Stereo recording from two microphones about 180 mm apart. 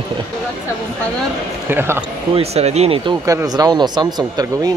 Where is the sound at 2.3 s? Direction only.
35° right (ahead or behind).